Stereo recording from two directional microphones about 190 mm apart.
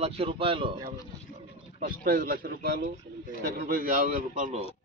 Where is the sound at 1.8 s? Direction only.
50° right (ahead or behind).